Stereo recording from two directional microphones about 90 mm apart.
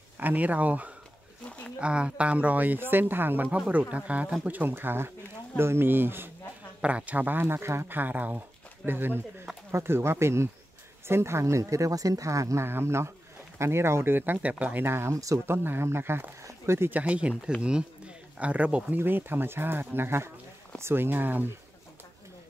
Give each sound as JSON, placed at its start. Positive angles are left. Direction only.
{"t": 0.2, "sound": "speech", "side_deg": -20}
{"t": 6.8, "sound": "speech", "side_deg": -15}
{"t": 15.4, "sound": "speech", "side_deg": -25}
{"t": 17.0, "sound": "speech", "side_deg": -15}